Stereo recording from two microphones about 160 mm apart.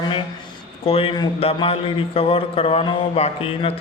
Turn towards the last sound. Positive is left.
turn(degrees=35)  # may be behind; listen again after turning